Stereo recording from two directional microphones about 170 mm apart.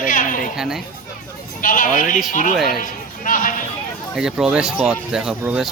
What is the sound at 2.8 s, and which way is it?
Sheep, 50° left (ahead or behind).